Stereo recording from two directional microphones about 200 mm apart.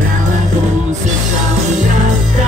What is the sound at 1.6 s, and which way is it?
Music, 35° right (ahead or behind).